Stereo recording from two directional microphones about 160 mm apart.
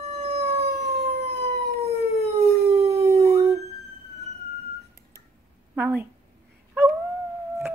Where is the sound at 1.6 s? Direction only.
75° right (ahead or behind).